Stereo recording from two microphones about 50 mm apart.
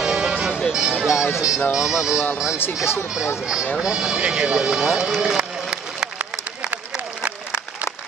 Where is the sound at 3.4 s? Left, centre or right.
Centre.